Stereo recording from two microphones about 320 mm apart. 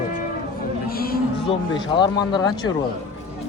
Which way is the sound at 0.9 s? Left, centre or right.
Left.